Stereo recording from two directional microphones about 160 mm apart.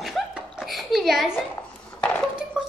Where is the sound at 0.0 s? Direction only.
5° right (ahead or behind).